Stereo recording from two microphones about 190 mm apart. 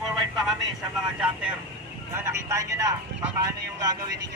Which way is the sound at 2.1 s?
15° right (ahead or behind).